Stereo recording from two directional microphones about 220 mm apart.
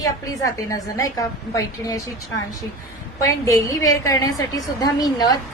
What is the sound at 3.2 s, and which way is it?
A woman's voice, 15° left (ahead or behind).